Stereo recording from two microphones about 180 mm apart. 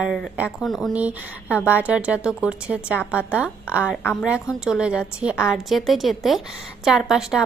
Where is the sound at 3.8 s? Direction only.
10° left (ahead or behind).